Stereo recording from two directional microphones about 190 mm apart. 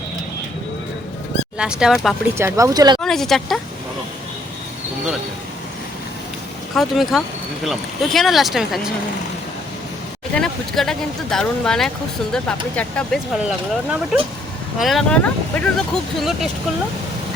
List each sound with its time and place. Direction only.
1.5 s speech: 5° right (ahead or behind)
2.4 s speech: 15° right (ahead or behind)
3.0 s speech: centre (ahead or behind)
6.7 s speech: centre (ahead or behind)
10.3 s speech: 5° left (ahead or behind)